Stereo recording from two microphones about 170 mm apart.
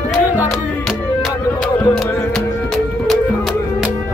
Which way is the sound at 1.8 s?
5° left (ahead or behind).